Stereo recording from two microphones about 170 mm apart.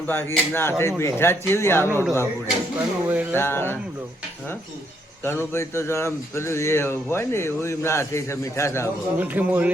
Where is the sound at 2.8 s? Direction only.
15° right (ahead or behind).